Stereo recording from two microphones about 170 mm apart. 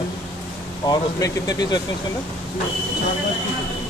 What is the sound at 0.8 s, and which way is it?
Speech, 25° left (ahead or behind).